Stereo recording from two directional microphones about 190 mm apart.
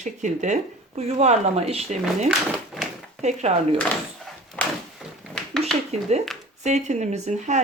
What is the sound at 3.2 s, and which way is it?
Speech, 35° right (ahead or behind).